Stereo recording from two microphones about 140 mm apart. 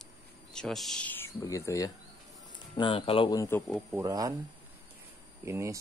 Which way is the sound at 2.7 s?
35° left (ahead or behind).